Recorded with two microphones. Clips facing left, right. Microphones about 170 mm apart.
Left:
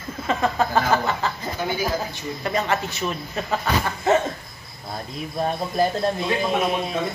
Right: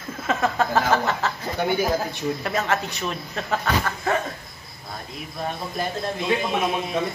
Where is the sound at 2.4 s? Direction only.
Centre (ahead or behind).